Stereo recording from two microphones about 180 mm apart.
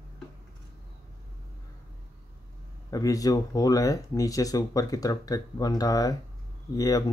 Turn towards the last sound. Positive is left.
turn(degrees=20)  # may be behind; listen again after turning